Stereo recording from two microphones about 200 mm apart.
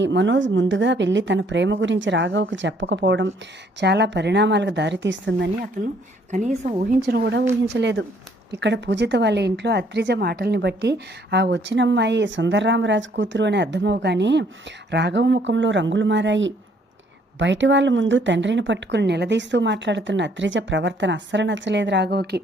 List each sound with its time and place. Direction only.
0.0 s a woman's voice: 65° right (ahead or behind)
6.3 s a woman's voice: 35° right (ahead or behind)
7.1 s a woman's voice: 55° right (ahead or behind)